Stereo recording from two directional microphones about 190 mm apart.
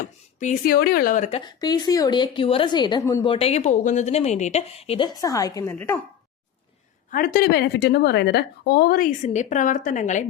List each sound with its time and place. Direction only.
0.3 s a woman's voice: 40° left (ahead or behind)
1.4 s a woman's voice: 20° left (ahead or behind)
3.2 s speech: 30° left (ahead or behind); by 6.0 s 15° left (ahead or behind)
7.1 s a woman's voice: 50° left (ahead or behind)